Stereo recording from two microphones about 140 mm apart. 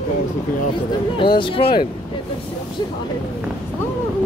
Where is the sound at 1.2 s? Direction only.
35° left (ahead or behind).